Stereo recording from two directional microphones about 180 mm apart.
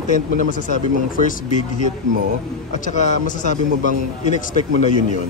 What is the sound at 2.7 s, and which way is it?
Speech, 40° left (ahead or behind).